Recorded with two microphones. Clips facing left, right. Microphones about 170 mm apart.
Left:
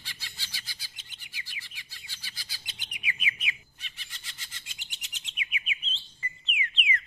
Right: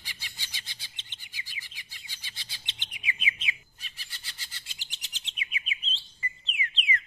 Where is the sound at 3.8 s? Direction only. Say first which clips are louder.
Right 1 dB; 35° right (ahead or behind).